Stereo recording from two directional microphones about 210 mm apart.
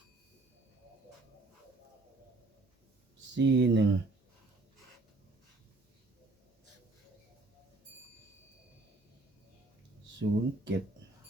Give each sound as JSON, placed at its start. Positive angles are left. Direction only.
{"t": 3.3, "sound": "speech", "side_deg": -60}
{"t": 10.2, "sound": "speech", "side_deg": -60}